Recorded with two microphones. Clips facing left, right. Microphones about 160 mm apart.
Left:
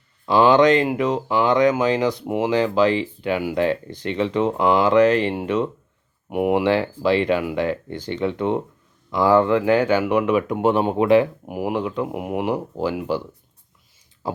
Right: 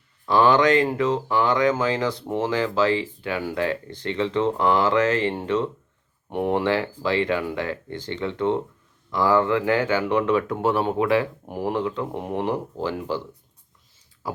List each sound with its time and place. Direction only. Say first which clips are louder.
0.3 s speech: left 3 dB; 20° left (ahead or behind)
11.4 s speech: left 1 dB; 10° left (ahead or behind)
14.2 s speech: left 4 dB; 25° left (ahead or behind)